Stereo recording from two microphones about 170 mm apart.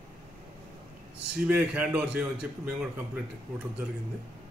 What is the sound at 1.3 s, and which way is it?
A man's voice, 10° right (ahead or behind).